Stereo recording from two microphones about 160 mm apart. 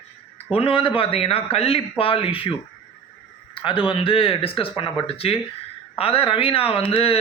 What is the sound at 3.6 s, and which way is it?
Speech, 30° left (ahead or behind).